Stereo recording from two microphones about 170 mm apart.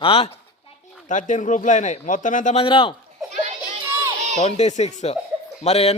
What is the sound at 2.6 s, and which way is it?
Speech, 30° left (ahead or behind).